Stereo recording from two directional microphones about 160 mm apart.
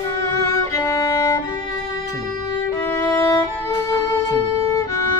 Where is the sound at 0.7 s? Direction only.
20° left (ahead or behind).